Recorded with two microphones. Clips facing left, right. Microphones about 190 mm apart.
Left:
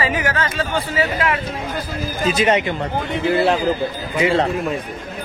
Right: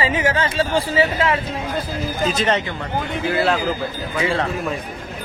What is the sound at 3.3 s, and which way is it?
A man's voice, 25° left (ahead or behind).